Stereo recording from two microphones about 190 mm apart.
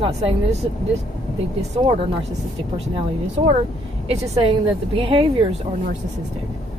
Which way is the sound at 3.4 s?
25° right (ahead or behind).